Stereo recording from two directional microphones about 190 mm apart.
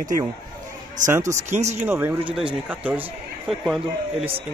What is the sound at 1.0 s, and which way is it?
Speech, 15° right (ahead or behind).